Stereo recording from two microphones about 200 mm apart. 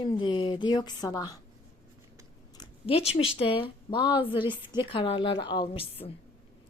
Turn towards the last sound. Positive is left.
turn(degrees=30)  # may be behind; listen again after turning